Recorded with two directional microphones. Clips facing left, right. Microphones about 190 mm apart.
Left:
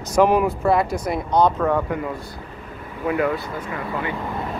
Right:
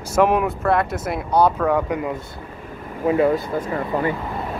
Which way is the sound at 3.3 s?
45° right (ahead or behind).